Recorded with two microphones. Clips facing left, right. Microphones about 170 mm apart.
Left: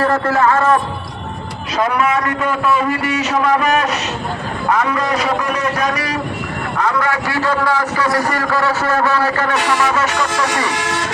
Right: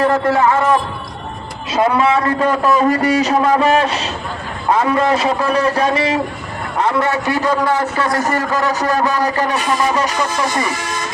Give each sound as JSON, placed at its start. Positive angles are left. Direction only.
{"t": 0.0, "sound": "a man's voice", "side_deg": -15}
{"t": 1.8, "sound": "a man's voice", "side_deg": -30}
{"t": 9.6, "sound": "speech", "side_deg": 80}
{"t": 10.7, "sound": "vehicle", "side_deg": 85}